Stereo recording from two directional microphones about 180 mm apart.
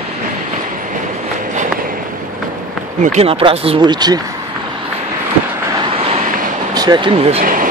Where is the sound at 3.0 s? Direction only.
40° right (ahead or behind); by 4.2 s 20° right (ahead or behind).